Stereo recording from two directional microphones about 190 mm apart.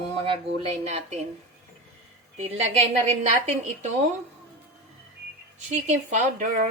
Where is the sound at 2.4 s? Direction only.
35° right (ahead or behind).